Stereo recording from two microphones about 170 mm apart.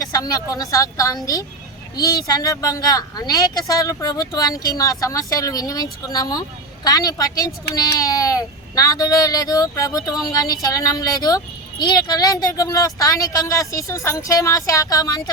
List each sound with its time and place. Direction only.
0.0 s speech: 20° left (ahead or behind)